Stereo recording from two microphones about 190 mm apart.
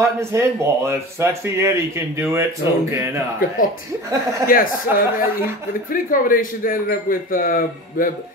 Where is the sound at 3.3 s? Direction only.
50° left (ahead or behind).